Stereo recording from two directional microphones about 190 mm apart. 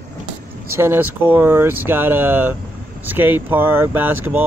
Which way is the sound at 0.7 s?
10° right (ahead or behind).